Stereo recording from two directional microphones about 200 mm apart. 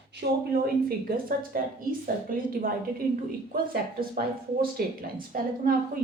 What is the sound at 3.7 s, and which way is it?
A woman's voice, 45° right (ahead or behind).